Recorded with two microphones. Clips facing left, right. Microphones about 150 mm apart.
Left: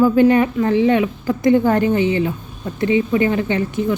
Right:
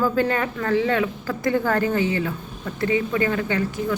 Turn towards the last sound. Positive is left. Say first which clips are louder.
# left 5 dB
turn(degrees=20)  # may be behind; listen again after turning